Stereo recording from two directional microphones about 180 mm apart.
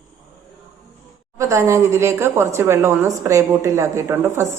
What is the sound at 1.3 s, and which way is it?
A woman's voice, 15° right (ahead or behind).